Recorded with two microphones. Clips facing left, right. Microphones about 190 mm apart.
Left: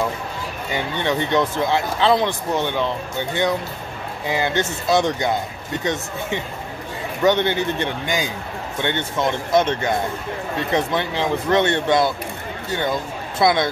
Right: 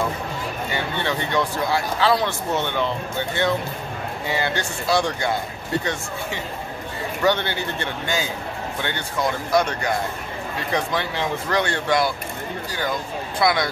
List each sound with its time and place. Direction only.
0.9 s speech: 20° left (ahead or behind)
7.2 s speech: 20° left (ahead or behind)
13.4 s speech: 25° left (ahead or behind)